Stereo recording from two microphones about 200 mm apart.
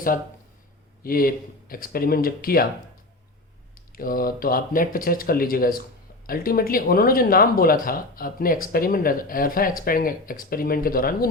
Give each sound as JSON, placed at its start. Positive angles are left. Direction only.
{"t": 1.0, "sound": "speech", "side_deg": 45}
{"t": 3.9, "sound": "speech", "side_deg": 45}